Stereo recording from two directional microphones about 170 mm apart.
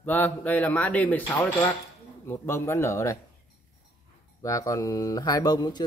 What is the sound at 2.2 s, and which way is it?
Speech, 15° left (ahead or behind).